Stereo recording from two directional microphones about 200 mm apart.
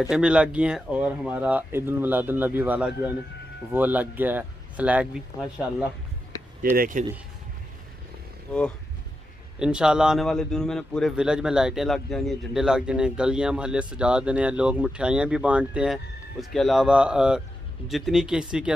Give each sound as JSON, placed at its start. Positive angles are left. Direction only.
{"t": 0.1, "sound": "speech", "side_deg": -5}
{"t": 6.6, "sound": "speech", "side_deg": -45}
{"t": 9.6, "sound": "a man's voice", "side_deg": -5}